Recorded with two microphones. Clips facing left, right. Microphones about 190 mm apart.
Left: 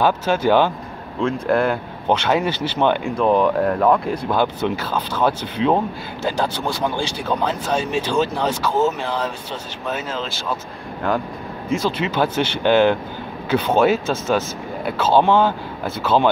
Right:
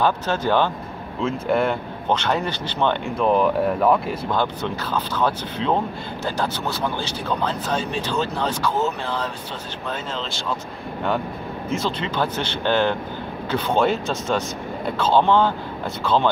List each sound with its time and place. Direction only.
0.0 s speech: 10° left (ahead or behind)
1.2 s speech: centre (ahead or behind)
3.2 s speech: centre (ahead or behind)
4.3 s speech: 10° left (ahead or behind)
11.7 s speech: 5° left (ahead or behind)